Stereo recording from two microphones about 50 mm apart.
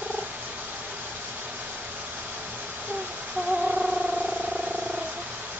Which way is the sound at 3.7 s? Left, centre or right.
Right.